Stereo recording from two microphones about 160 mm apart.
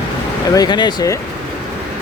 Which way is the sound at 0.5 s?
25° left (ahead or behind).